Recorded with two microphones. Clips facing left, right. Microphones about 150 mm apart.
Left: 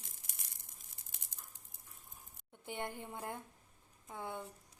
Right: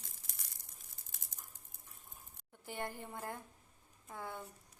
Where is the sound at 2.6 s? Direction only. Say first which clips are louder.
Even; 20° left (ahead or behind).